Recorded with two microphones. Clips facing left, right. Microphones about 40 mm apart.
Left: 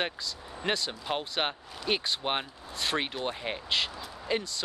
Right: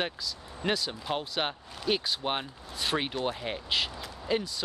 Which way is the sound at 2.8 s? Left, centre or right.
Centre.